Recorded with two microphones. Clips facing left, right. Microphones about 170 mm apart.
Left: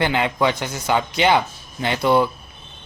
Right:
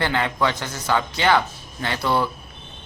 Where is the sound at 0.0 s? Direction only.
15° left (ahead or behind).